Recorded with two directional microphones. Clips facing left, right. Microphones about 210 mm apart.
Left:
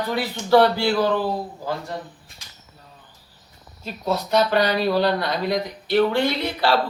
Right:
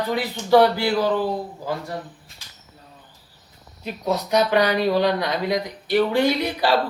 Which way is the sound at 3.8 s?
15° right (ahead or behind).